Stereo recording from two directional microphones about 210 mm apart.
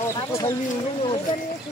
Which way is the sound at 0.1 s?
15° left (ahead or behind).